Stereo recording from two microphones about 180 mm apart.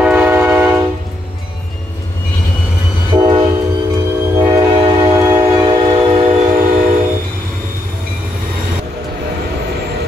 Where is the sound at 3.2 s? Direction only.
25° right (ahead or behind).